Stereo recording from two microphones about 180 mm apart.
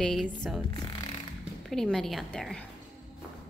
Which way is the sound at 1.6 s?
Centre (ahead or behind).